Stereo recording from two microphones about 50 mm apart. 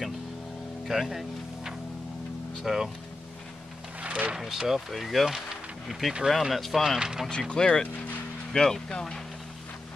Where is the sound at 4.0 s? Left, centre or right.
Right.